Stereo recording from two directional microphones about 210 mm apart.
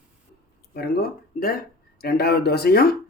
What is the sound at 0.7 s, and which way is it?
Speech, 45° left (ahead or behind).